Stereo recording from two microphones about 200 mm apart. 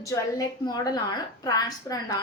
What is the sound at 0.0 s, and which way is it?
A woman's voice, 15° left (ahead or behind).